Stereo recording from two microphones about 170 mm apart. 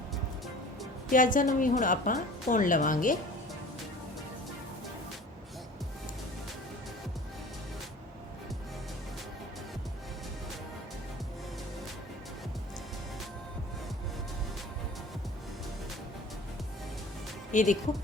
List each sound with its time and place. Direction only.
1.1 s a woman's voice: 50° left (ahead or behind)
17.5 s speech: 50° left (ahead or behind)